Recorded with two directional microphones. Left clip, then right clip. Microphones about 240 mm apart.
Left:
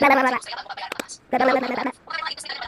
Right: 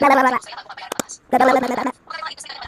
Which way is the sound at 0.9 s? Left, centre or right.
Centre.